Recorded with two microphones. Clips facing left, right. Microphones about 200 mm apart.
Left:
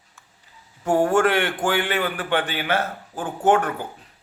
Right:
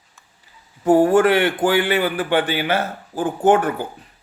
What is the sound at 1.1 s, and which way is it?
A man's voice, 15° right (ahead or behind).